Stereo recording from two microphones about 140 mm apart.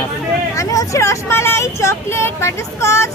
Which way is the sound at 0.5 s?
25° left (ahead or behind).